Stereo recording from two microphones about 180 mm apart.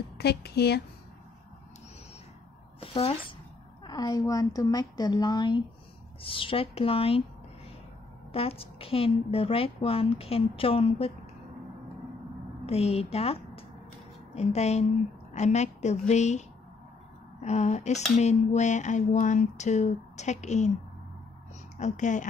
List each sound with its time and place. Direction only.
0.2 s speech: 65° left (ahead or behind)
2.8 s a woman's voice: 30° left (ahead or behind)
8.3 s a woman's voice: 30° left (ahead or behind)
12.6 s a woman's voice: 35° left (ahead or behind)
21.7 s a woman's voice: 40° left (ahead or behind)